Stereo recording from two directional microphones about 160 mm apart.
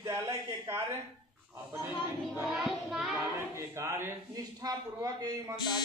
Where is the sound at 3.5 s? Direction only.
15° right (ahead or behind).